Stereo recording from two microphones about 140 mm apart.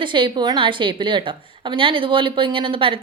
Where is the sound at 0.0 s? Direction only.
35° right (ahead or behind).